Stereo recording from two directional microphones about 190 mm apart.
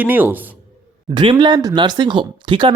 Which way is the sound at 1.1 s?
25° right (ahead or behind).